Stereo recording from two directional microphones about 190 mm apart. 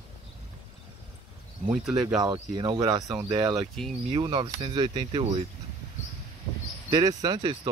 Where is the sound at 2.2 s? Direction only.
20° right (ahead or behind).